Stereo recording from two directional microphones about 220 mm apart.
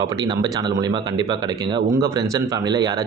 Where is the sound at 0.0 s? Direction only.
20° right (ahead or behind).